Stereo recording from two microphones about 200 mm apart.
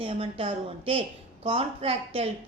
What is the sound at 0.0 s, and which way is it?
A woman's voice, 25° right (ahead or behind).